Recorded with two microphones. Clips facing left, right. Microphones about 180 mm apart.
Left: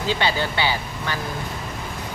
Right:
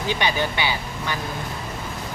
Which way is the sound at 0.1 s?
15° right (ahead or behind).